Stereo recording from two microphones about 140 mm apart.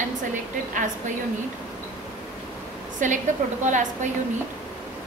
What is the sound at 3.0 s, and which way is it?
Speech, 65° right (ahead or behind).